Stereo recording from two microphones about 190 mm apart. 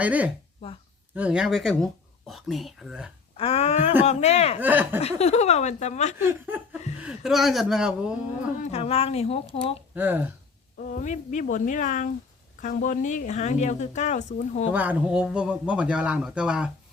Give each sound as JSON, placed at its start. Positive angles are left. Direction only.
{"t": 0.0, "sound": "a man's voice", "side_deg": -10}
{"t": 3.3, "sound": "speech", "side_deg": 30}
{"t": 4.6, "sound": "speech", "side_deg": -10}
{"t": 4.9, "sound": "speech", "side_deg": 30}
{"t": 6.1, "sound": "a man's voice", "side_deg": -10}
{"t": 8.6, "sound": "speech", "side_deg": 30}
{"t": 9.9, "sound": "speech", "side_deg": -10}
{"t": 10.8, "sound": "speech", "side_deg": 45}
{"t": 14.7, "sound": "a man's voice", "side_deg": -10}